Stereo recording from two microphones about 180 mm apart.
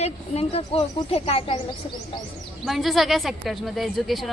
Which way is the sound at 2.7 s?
Centre (ahead or behind).